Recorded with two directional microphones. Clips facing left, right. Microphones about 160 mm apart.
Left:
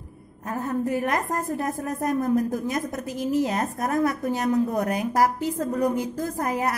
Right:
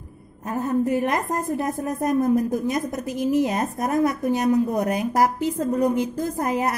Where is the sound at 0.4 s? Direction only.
20° right (ahead or behind).